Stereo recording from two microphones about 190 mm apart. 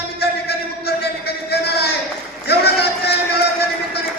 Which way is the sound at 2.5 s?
60° left (ahead or behind).